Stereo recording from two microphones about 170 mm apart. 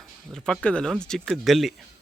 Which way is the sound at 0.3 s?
5° left (ahead or behind).